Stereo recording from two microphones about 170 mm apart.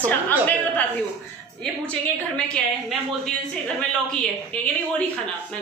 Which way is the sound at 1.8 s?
5° left (ahead or behind).